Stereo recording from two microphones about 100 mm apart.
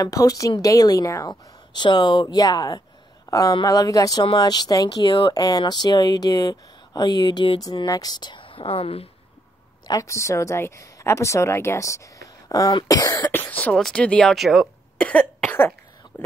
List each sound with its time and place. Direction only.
0.0 s speech: 35° left (ahead or behind)
1.3 s speech: 50° left (ahead or behind)
5.3 s speech: 40° left (ahead or behind); by 9.1 s 75° left (ahead or behind)
9.8 s speech: 35° left (ahead or behind)
13.3 s speech: 20° left (ahead or behind); by 14.7 s centre (ahead or behind)
15.0 s cough: 10° left (ahead or behind)